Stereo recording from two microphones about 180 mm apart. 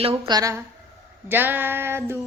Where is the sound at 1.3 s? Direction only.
10° right (ahead or behind).